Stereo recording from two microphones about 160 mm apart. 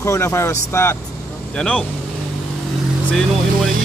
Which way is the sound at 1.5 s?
5° left (ahead or behind).